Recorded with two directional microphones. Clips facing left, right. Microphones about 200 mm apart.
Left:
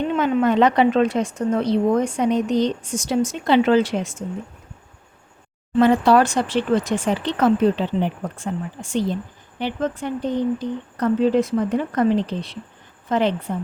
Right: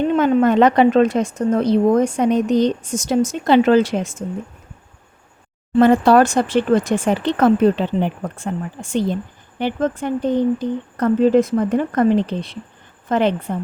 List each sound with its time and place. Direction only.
0.2 s a woman's voice: 45° right (ahead or behind)
5.8 s a woman's voice: 50° right (ahead or behind)